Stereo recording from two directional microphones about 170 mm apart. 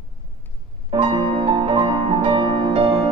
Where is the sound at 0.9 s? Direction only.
30° right (ahead or behind).